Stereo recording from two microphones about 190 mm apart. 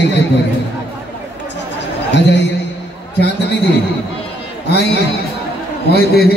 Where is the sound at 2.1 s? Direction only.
65° left (ahead or behind).